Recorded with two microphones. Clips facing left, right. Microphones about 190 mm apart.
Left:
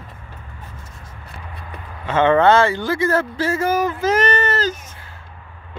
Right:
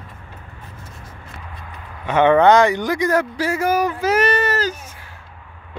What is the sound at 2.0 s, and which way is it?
Speech, 15° right (ahead or behind).